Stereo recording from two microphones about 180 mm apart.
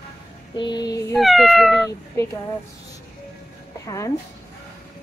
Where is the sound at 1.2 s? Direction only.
Centre (ahead or behind).